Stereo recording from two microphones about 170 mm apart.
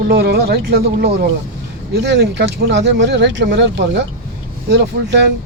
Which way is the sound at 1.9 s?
85° right.